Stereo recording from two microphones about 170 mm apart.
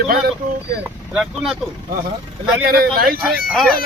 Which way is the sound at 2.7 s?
60° right (ahead or behind).